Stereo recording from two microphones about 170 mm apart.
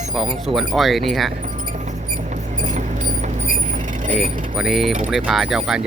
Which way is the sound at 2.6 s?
45° right (ahead or behind).